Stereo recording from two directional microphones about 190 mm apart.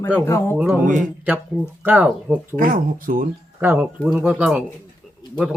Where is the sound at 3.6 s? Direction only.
10° right (ahead or behind).